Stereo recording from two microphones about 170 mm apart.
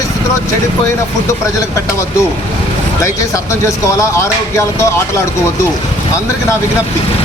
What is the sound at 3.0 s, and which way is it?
Speech, 15° left (ahead or behind).